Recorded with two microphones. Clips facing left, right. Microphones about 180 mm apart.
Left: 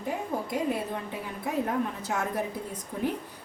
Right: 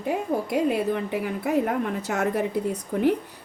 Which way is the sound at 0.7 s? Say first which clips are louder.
Right 7 dB; 75° right (ahead or behind).